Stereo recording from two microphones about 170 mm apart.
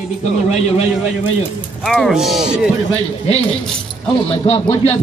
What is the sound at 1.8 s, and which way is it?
Speech, centre (ahead or behind).